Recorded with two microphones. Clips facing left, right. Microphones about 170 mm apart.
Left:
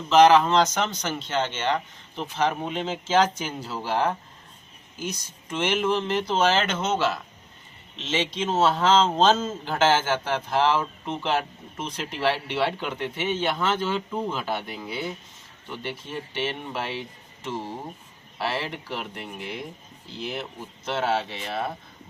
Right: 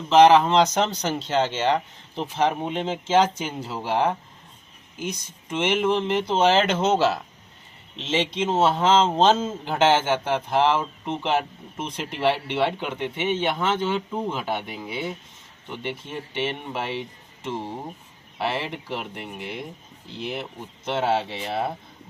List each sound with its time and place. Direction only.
0.1 s speech: 25° right (ahead or behind)
2.4 s speech: 20° right (ahead or behind)
5.5 s speech: 20° right (ahead or behind)
8.5 s speech: 10° right (ahead or behind)
8.9 s speech: 25° right (ahead or behind)
20.3 s speech: 15° right (ahead or behind)